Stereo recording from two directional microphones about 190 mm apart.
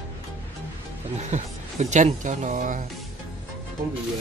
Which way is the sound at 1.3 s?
40° right (ahead or behind).